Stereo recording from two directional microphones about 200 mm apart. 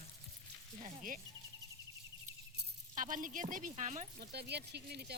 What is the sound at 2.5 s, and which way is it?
Speech, 40° right (ahead or behind).